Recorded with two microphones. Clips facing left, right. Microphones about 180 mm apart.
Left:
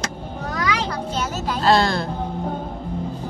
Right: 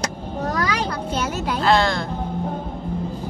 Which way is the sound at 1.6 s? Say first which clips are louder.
Left 1 dB; 35° left (ahead or behind).